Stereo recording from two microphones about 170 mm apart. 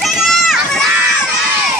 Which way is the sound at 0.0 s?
Centre (ahead or behind).